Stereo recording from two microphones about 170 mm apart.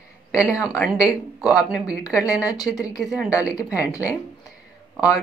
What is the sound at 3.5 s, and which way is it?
Speech, 20° left (ahead or behind).